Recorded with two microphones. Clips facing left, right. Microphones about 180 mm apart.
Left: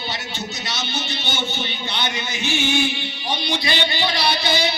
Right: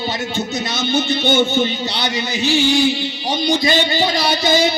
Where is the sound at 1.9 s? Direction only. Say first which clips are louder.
Right 5 dB; 35° right (ahead or behind).